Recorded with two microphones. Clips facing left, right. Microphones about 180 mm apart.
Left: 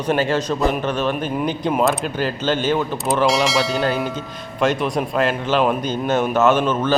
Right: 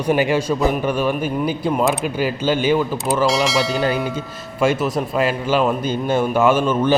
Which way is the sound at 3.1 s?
Centre (ahead or behind).